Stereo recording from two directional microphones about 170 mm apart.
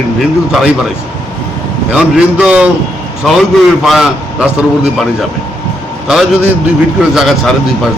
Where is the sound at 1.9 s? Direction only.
5° right (ahead or behind).